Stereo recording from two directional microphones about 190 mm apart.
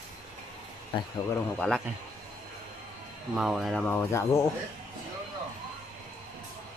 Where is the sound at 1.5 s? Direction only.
5° left (ahead or behind).